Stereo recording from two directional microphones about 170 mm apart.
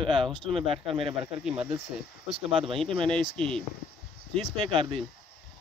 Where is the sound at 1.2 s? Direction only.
5° right (ahead or behind).